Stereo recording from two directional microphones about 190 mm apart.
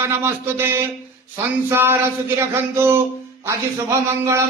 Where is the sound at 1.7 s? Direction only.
10° right (ahead or behind).